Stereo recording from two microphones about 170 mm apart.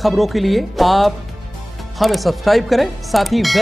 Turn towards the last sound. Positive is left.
turn(degrees=0)  # may be behind; listen again after turning